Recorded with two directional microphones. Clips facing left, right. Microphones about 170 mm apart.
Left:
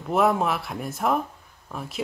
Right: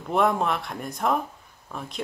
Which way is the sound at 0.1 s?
5° left (ahead or behind).